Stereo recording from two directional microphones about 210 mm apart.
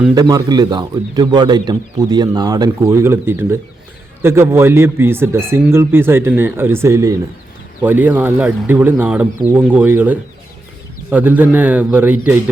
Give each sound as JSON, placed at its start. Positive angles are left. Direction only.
{"t": 0.1, "sound": "a man's voice", "side_deg": -15}